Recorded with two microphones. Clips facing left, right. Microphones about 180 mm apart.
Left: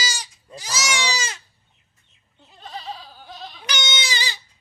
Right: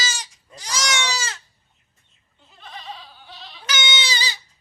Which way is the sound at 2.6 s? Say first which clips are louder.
Left 3 dB; 35° left (ahead or behind).